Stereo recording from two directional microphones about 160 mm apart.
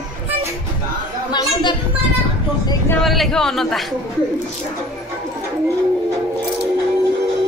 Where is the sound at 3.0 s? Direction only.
Centre (ahead or behind).